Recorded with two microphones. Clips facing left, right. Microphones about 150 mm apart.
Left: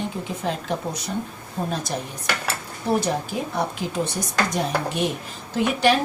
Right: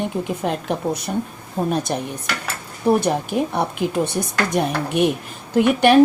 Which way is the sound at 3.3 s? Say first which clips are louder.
Right 7 dB; 60° right (ahead or behind).